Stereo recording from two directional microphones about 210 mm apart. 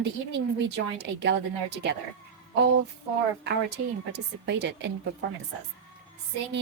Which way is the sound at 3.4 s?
55° right (ahead or behind).